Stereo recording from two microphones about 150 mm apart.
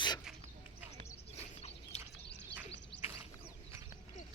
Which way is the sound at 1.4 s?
45° left (ahead or behind).